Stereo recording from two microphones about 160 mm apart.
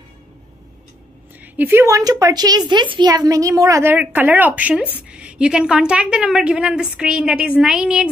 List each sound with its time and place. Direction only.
1.4 s a woman's voice: 10° right (ahead or behind)